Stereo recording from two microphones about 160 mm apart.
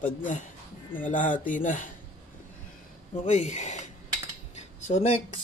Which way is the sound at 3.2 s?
45° left (ahead or behind).